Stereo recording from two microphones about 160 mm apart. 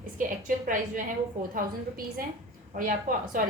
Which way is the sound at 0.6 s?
55° right (ahead or behind).